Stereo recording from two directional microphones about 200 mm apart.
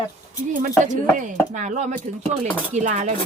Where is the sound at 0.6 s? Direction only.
40° right (ahead or behind).